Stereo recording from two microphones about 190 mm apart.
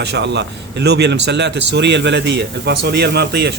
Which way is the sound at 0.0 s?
65° right (ahead or behind).